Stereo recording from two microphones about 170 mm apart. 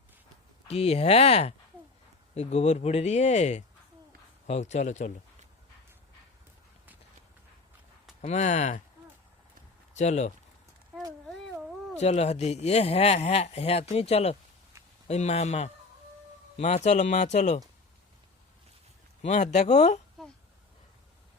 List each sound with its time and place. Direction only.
0.7 s speech: 35° left (ahead or behind)
8.2 s speech: 45° left (ahead or behind)
9.9 s speech: 45° left (ahead or behind)
11.9 s speech: 40° left (ahead or behind)
19.2 s speech: 45° left (ahead or behind)
20.2 s a sound: 5° left (ahead or behind)